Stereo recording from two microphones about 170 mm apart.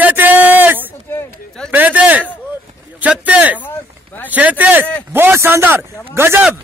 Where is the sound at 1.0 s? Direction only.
10° left (ahead or behind).